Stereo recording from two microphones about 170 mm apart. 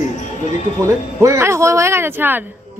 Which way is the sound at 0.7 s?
15° right (ahead or behind).